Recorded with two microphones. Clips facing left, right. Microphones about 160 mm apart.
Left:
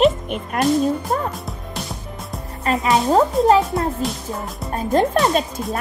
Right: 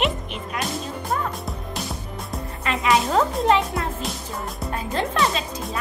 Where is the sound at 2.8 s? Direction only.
25° left (ahead or behind).